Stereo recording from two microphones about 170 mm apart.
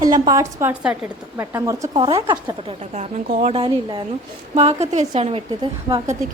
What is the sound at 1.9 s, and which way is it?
Speech, 30° right (ahead or behind).